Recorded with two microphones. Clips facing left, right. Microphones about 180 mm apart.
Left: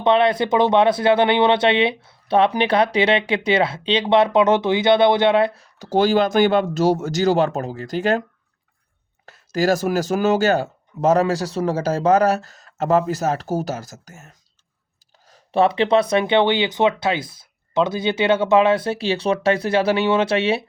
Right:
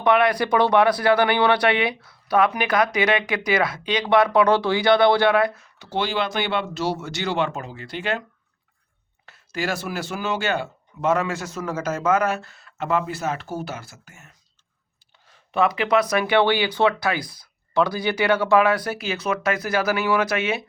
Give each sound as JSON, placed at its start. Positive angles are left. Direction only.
{"t": 0.0, "sound": "speech", "side_deg": 25}
{"t": 5.8, "sound": "speech", "side_deg": 40}
{"t": 9.2, "sound": "speech", "side_deg": 40}